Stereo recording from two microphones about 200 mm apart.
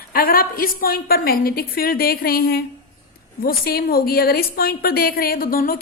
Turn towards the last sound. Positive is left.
turn(degrees=45)  # may be behind; listen again after turning